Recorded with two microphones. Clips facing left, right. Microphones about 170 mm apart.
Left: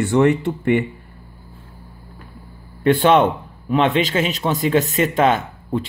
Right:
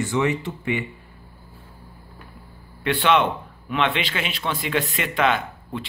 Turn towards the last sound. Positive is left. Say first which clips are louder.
# left 6 dB
turn(degrees=45)  # may be behind; listen again after turning